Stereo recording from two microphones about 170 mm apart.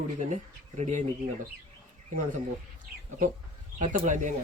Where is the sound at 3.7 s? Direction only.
50° right (ahead or behind).